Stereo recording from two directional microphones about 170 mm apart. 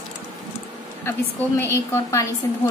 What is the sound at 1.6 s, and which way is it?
A woman's voice, 15° left (ahead or behind).